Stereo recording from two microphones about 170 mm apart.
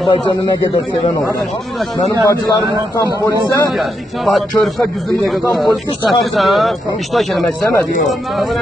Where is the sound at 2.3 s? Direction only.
20° left (ahead or behind).